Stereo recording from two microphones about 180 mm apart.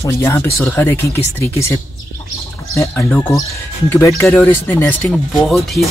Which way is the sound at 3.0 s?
10° left (ahead or behind).